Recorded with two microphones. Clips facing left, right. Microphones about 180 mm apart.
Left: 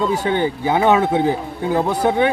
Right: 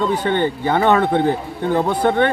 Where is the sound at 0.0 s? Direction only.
5° left (ahead or behind).